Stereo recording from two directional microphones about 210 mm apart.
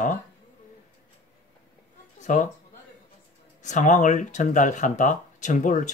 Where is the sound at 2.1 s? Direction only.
35° left (ahead or behind).